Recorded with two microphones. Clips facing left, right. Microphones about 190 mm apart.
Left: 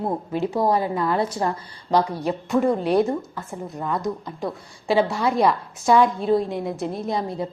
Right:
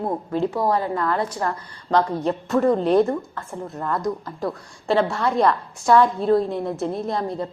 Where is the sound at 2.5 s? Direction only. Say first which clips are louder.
Right 2 dB; 5° left (ahead or behind).